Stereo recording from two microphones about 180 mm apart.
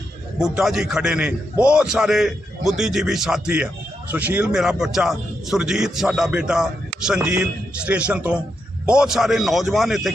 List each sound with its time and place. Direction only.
0.3 s a man's voice: 5° right (ahead or behind)